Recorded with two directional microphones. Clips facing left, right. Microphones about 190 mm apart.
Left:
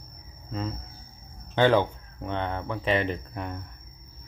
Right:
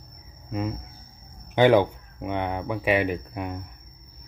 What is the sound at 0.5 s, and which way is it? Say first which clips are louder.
Cricket: right 4 dB; 15° right (ahead or behind).